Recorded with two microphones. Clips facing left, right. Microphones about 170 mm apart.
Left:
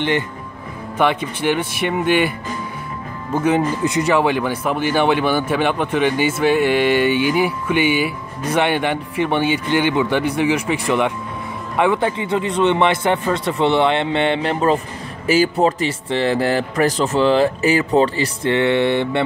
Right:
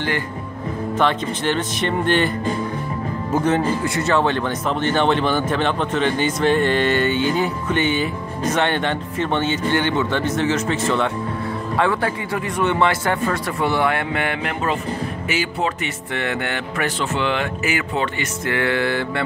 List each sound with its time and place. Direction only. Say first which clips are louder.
0.9 s speech: left 2 dB; 10° left (ahead or behind)
3.4 s speech: left 4 dB; 15° left (ahead or behind)